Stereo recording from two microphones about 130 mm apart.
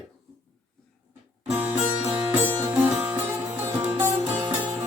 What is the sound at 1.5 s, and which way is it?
Music, 15° right (ahead or behind).